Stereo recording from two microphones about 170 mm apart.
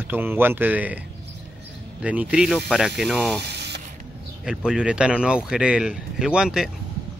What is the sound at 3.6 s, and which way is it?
Spray, 85° right.